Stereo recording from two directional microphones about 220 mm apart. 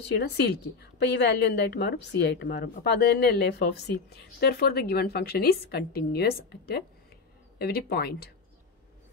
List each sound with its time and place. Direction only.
0.2 s a woman's voice: 50° left (ahead or behind)